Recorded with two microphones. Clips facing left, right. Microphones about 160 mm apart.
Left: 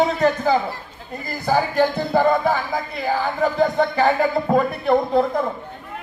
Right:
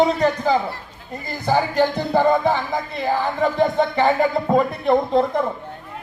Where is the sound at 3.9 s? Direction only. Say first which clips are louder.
Even; 20° right (ahead or behind).